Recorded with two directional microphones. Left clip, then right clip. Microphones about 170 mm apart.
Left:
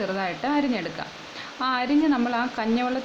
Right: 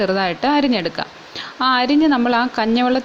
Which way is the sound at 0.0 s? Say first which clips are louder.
Right 9 dB; 40° right (ahead or behind).